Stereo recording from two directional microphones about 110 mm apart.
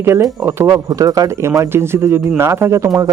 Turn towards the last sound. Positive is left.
turn(degrees=-30)  # may be behind; listen again after turning